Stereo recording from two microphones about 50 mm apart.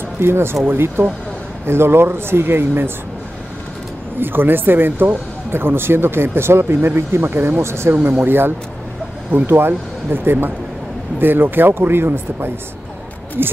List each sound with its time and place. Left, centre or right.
0.2 s speech: right
4.2 s speech: right
7.9 s speech: right